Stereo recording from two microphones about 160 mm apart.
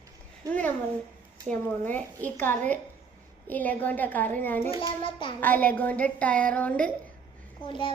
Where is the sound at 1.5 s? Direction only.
10° left (ahead or behind).